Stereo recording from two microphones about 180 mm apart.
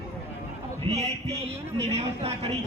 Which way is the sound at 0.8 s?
35° right (ahead or behind).